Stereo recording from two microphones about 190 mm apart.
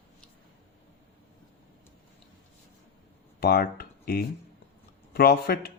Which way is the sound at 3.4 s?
55° left (ahead or behind).